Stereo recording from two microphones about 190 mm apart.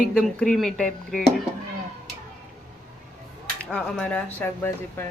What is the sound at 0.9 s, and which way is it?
Speech, 45° left (ahead or behind).